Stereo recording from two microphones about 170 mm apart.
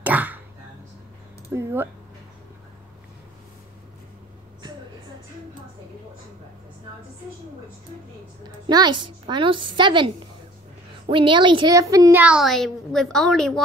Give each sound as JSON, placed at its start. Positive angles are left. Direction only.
{"t": 0.0, "sound": "a sound", "side_deg": -10}
{"t": 1.5, "sound": "a woman's voice", "side_deg": -15}
{"t": 8.6, "sound": "a woman's voice", "side_deg": -25}